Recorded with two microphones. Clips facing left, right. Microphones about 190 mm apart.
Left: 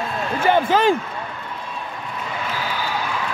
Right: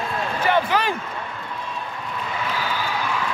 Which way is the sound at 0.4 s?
25° left (ahead or behind).